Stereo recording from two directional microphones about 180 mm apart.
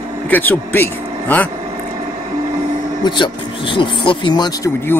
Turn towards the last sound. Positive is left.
turn(degrees=25)  # may be behind; listen again after turning